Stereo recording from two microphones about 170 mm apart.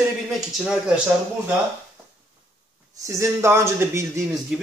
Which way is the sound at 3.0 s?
20° right (ahead or behind).